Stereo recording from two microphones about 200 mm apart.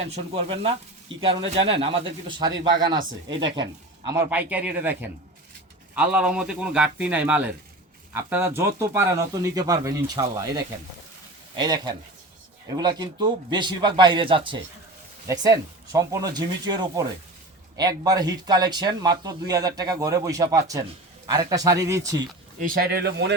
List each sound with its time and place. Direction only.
0.0 s speech: 30° right (ahead or behind)
22.6 s speech: 45° right (ahead or behind)